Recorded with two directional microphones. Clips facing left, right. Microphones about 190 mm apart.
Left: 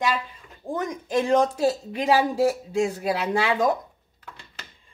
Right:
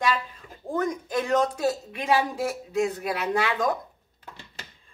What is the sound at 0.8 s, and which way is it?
Speech, 25° left (ahead or behind).